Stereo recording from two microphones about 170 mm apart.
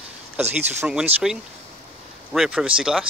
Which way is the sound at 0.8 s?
5° right (ahead or behind).